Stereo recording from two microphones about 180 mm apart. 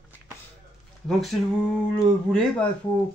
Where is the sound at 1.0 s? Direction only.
Centre (ahead or behind).